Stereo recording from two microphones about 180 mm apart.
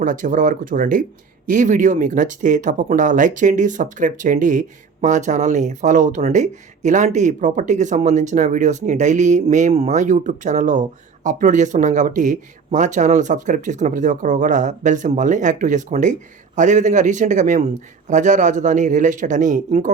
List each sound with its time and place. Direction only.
0.0 s speech: 45° right (ahead or behind)